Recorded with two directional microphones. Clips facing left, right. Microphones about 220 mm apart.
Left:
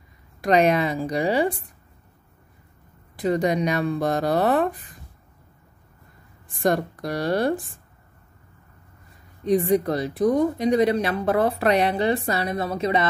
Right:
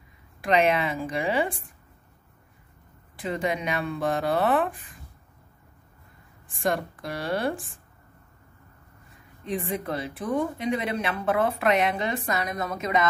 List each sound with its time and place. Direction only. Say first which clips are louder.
0.4 s speech: left 4 dB; 40° left (ahead or behind)
3.2 s speech: left 7 dB; 40° left (ahead or behind)
6.5 s speech: left 5 dB; 40° left (ahead or behind)
9.4 s speech: left 10 dB; 40° left (ahead or behind)